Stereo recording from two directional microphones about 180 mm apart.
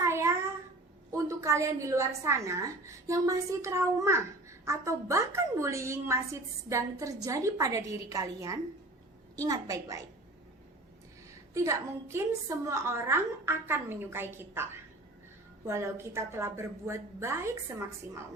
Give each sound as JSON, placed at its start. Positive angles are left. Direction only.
{"t": 0.0, "sound": "a sound", "side_deg": -15}
{"t": 1.1, "sound": "a woman's voice", "side_deg": -15}
{"t": 11.5, "sound": "a woman's voice", "side_deg": -15}